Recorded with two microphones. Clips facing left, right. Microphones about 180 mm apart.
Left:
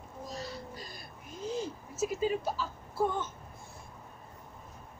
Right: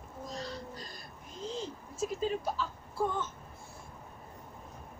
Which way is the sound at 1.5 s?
5° left (ahead or behind).